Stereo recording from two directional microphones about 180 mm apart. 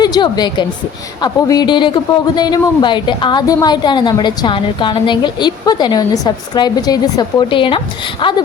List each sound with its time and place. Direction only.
0.0 s a woman's voice: 20° left (ahead or behind)